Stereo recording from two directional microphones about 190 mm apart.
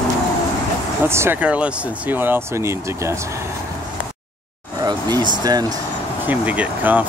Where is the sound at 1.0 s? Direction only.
15° right (ahead or behind).